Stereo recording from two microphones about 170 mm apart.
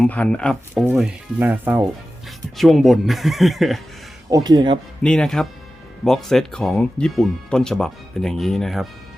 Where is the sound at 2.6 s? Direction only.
Centre (ahead or behind).